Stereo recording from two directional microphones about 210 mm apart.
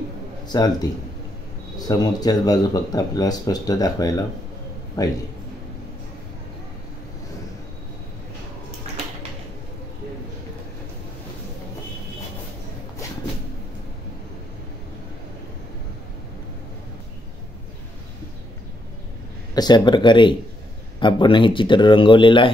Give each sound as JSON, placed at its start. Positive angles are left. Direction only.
{"t": 0.5, "sound": "speech", "side_deg": 20}
{"t": 1.8, "sound": "speech", "side_deg": 20}
{"t": 19.5, "sound": "speech", "side_deg": 20}